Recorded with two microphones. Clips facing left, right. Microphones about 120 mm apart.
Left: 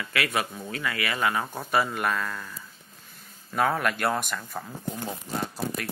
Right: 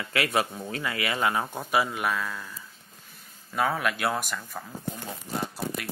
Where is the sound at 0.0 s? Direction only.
25° right (ahead or behind); by 2.5 s 5° right (ahead or behind).